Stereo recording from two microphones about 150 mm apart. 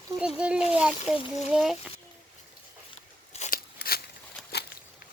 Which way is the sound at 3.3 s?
50° left (ahead or behind).